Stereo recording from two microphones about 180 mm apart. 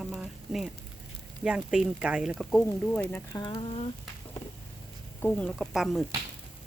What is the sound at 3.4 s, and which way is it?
Speech, 30° left (ahead or behind).